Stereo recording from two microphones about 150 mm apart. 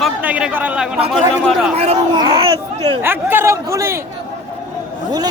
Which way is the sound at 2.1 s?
35° right (ahead or behind).